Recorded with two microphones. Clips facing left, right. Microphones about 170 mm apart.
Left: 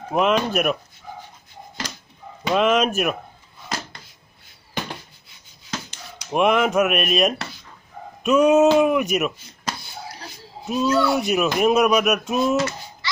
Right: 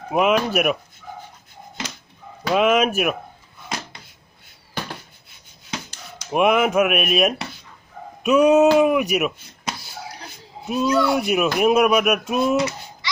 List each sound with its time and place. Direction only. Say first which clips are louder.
0.1 s speech: right 1 dB; 5° right (ahead or behind)
2.5 s speech: right 1 dB; 5° right (ahead or behind)
6.3 s speech: right 1 dB; 5° right (ahead or behind)
8.2 s a sound: right 1 dB; centre (ahead or behind)
8.6 s speech: right 1 dB; 5° right (ahead or behind)
12.5 s a sound: right 1 dB; 15° right (ahead or behind)